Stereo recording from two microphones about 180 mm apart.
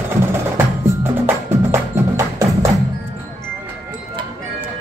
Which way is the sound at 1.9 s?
15° right (ahead or behind).